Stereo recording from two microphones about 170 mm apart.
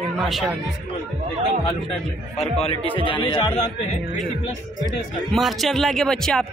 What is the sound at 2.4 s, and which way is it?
A man's voice, 35° left (ahead or behind).